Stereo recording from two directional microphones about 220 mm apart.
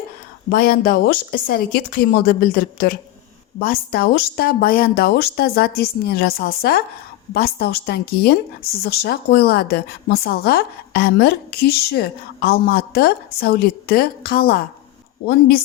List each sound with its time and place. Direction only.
0.5 s a woman's voice: 40° left (ahead or behind)